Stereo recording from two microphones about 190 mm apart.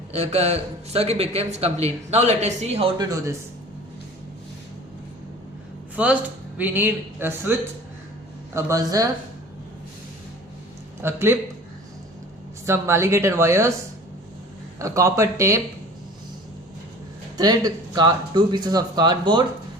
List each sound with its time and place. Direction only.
0.1 s a man's voice: 35° right (ahead or behind)
3.0 s speech: 20° right (ahead or behind)
6.0 s speech: 10° right (ahead or behind)
8.5 s speech: 15° right (ahead or behind)
11.0 s speech: 15° right (ahead or behind)
12.6 s speech: 15° right (ahead or behind)
14.8 s speech: 15° right (ahead or behind)
17.3 s speech: 20° right (ahead or behind)